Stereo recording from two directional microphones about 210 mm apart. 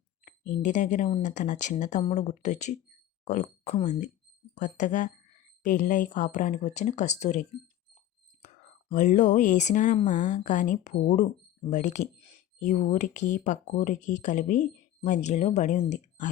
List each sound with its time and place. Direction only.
0.3 s speech: 35° left (ahead or behind)
8.9 s speech: 35° left (ahead or behind)